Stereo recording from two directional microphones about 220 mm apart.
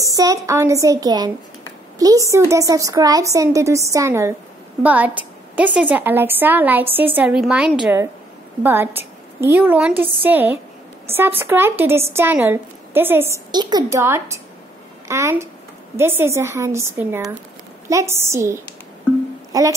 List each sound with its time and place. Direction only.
0.0 s a woman's voice: 15° right (ahead or behind)